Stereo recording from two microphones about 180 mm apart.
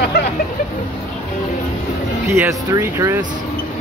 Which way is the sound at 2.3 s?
15° right (ahead or behind).